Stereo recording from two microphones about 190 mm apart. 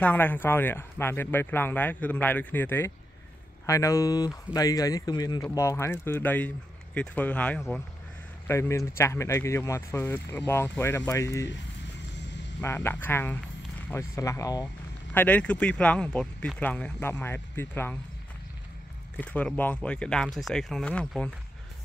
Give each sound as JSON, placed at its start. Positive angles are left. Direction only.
{"t": 0.0, "sound": "speech", "side_deg": 10}
{"t": 12.5, "sound": "speech", "side_deg": 10}
{"t": 19.1, "sound": "speech", "side_deg": 5}